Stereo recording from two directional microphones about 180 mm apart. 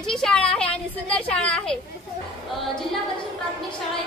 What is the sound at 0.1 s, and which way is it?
A woman's voice, 5° left (ahead or behind).